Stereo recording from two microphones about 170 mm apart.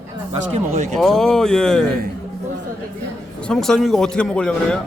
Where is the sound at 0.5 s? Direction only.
35° right (ahead or behind).